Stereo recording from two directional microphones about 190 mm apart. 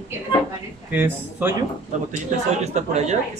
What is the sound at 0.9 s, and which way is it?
Speech, 10° right (ahead or behind).